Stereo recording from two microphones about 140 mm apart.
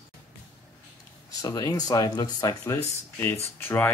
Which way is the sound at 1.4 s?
25° left (ahead or behind).